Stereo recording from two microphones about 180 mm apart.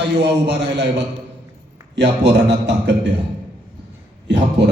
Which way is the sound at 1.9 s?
75° right (ahead or behind).